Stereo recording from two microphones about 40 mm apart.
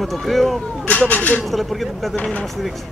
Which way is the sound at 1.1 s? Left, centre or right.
Left.